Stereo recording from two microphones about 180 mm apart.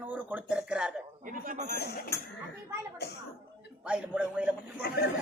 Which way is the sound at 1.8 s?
60° left (ahead or behind).